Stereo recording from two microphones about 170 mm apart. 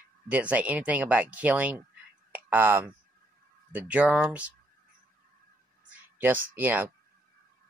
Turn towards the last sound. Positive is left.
turn(degrees=-10)  # may be behind; listen again after turning